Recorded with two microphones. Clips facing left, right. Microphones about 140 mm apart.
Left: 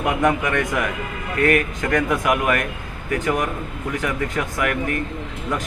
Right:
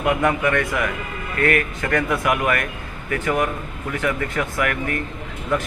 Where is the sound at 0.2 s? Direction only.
15° left (ahead or behind).